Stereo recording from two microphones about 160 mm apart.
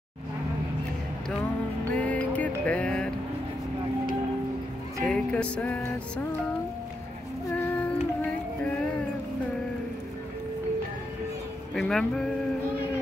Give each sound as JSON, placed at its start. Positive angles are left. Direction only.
{"t": 2.0, "sound": "music", "side_deg": 10}
{"t": 5.0, "sound": "music", "side_deg": 5}
{"t": 11.7, "sound": "speech", "side_deg": 0}